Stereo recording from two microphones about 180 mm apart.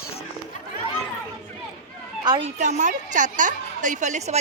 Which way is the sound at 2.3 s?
30° right (ahead or behind).